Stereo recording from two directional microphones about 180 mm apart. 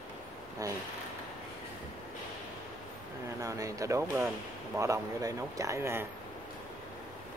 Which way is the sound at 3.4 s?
20° right (ahead or behind).